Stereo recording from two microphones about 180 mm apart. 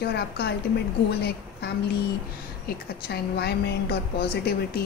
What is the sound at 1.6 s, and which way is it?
A woman's voice, 60° left (ahead or behind).